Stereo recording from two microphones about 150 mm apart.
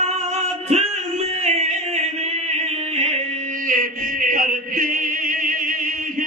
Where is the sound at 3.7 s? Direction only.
65° right (ahead or behind).